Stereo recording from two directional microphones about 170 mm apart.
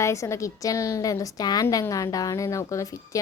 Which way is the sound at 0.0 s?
15° left (ahead or behind).